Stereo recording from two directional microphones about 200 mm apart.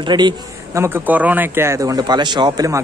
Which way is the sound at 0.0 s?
20° right (ahead or behind).